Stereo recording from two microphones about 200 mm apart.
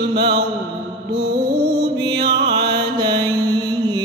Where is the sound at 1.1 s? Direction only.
60° right (ahead or behind).